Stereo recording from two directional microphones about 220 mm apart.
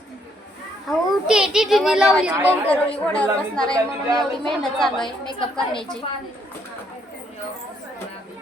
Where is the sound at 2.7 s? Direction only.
5° left (ahead or behind).